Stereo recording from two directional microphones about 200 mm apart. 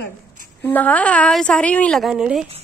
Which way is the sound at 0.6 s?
10° left (ahead or behind).